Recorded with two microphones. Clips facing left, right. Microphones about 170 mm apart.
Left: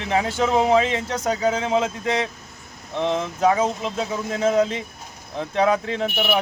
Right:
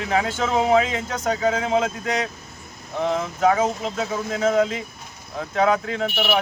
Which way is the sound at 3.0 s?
25° left (ahead or behind).